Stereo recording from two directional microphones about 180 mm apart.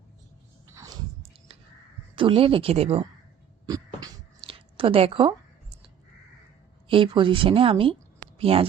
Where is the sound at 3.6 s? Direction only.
20° right (ahead or behind).